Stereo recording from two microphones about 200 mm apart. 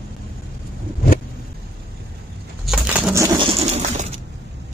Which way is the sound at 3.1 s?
20° right (ahead or behind).